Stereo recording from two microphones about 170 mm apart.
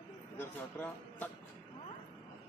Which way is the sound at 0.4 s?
10° left (ahead or behind).